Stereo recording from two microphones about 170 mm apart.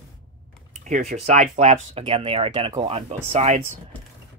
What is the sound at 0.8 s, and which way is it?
Speech, 40° right (ahead or behind).